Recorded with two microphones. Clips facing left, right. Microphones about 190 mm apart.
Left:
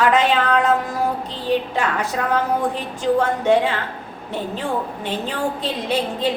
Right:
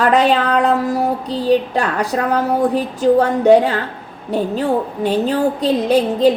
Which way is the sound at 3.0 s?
40° right (ahead or behind).